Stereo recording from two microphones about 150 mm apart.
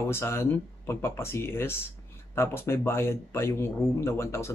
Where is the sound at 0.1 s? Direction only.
15° left (ahead or behind).